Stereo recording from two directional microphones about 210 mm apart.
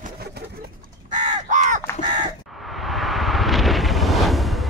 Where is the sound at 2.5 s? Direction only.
Centre (ahead or behind).